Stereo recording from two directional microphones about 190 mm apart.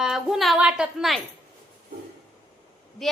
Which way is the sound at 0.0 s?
Centre (ahead or behind).